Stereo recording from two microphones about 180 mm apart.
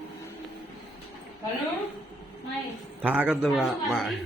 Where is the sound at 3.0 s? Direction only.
10° right (ahead or behind).